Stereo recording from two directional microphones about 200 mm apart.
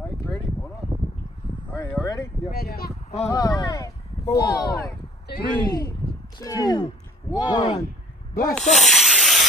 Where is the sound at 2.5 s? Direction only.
50° left (ahead or behind).